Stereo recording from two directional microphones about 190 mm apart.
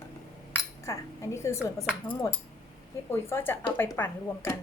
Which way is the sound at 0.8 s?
15° left (ahead or behind).